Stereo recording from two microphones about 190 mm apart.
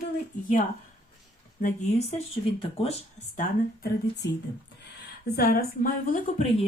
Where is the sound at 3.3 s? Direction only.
60° left (ahead or behind).